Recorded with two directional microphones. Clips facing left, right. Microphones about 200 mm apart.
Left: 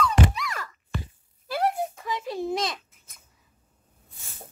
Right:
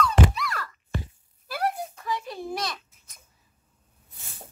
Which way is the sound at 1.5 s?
20° left (ahead or behind).